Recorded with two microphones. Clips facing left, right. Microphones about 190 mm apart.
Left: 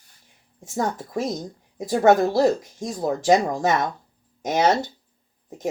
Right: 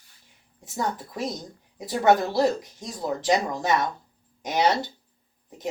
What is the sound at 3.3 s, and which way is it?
Speech, 45° left (ahead or behind).